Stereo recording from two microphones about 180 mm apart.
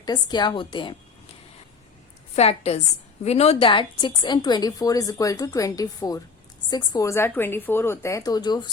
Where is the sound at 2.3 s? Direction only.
35° left (ahead or behind).